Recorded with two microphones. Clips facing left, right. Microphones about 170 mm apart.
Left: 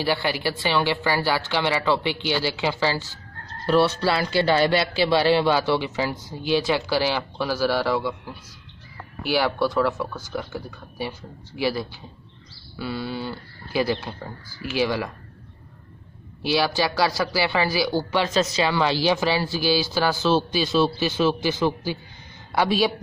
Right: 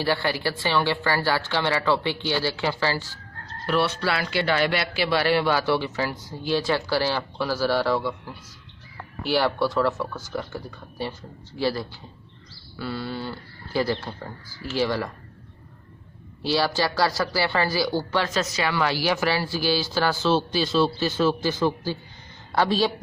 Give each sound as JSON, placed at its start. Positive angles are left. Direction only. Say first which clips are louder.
{"t": 0.0, "sound": "speech", "louder": "left 1 dB", "side_deg": 15}
{"t": 3.6, "sound": "speech", "louder": "left 4 dB", "side_deg": 35}
{"t": 16.4, "sound": "speech", "louder": "left 1 dB", "side_deg": 15}